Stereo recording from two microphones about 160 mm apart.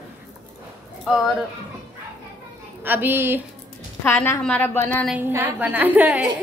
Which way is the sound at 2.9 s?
10° right (ahead or behind).